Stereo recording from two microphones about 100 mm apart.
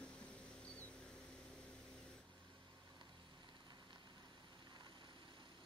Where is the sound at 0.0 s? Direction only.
10° left (ahead or behind).